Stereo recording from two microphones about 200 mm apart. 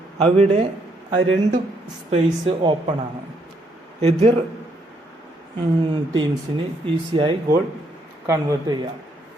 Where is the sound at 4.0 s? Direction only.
30° right (ahead or behind).